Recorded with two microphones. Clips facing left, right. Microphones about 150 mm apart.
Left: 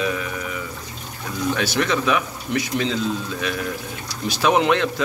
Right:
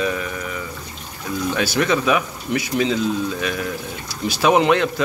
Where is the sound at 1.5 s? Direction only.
5° right (ahead or behind).